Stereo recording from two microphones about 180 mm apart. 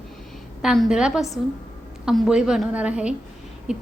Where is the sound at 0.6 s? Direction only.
Centre (ahead or behind).